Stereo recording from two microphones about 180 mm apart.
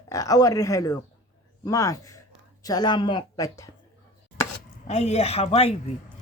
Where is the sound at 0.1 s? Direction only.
20° left (ahead or behind).